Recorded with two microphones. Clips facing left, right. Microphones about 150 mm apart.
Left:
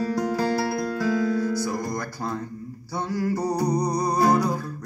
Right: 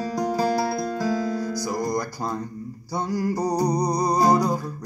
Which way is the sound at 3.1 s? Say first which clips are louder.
Even; 40° right (ahead or behind).